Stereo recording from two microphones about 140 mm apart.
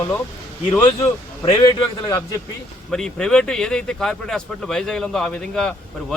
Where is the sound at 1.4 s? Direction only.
35° left (ahead or behind).